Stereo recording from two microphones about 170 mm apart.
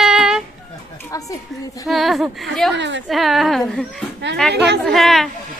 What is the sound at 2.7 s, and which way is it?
Speech, 90° right.